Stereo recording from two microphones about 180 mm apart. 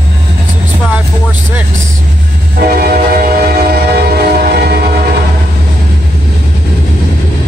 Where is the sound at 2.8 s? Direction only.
55° right (ahead or behind).